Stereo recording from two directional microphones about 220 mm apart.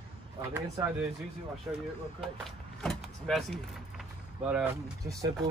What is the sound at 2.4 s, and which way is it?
Vehicle, centre (ahead or behind).